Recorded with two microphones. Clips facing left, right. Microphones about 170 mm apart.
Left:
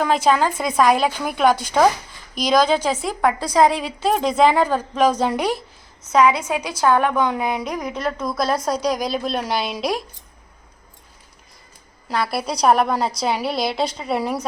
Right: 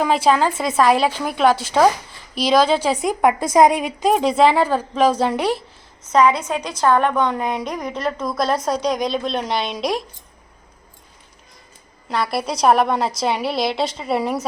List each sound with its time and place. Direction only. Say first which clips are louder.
0.0 s a woman's voice: right 1 dB; 5° right (ahead or behind)
4.1 s a woman's voice: right 1 dB; 5° right (ahead or behind)
12.0 s a woman's voice: right 1 dB; centre (ahead or behind)